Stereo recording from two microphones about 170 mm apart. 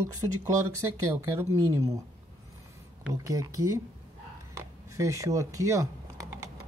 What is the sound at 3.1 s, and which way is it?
Speech, 20° right (ahead or behind).